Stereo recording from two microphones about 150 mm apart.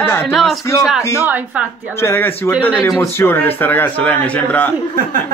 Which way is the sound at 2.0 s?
15° left (ahead or behind).